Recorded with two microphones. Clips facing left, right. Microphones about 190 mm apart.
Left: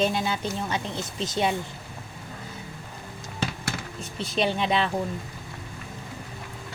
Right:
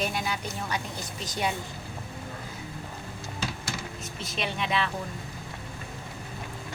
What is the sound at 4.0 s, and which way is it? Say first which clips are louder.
Speech: left 10 dB; 30° left (ahead or behind).